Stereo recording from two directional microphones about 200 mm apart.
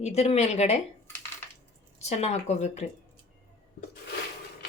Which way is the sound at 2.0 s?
35° left (ahead or behind).